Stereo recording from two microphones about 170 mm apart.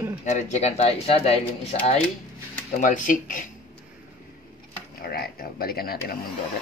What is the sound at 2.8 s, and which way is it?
Speech, 50° left (ahead or behind).